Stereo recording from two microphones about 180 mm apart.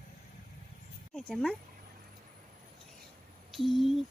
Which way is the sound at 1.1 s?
Centre (ahead or behind).